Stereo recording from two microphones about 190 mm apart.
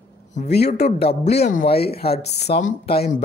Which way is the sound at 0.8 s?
35° left (ahead or behind).